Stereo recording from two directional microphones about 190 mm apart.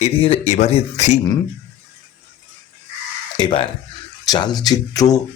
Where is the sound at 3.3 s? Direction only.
25° left (ahead or behind).